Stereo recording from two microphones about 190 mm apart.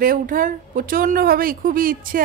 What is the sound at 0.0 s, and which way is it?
A woman's voice, 45° right (ahead or behind).